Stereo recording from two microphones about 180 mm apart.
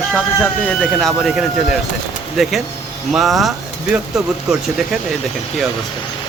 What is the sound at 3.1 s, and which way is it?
Speech, centre (ahead or behind).